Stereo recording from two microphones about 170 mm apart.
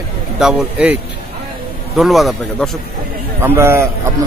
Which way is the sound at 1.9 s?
Centre (ahead or behind).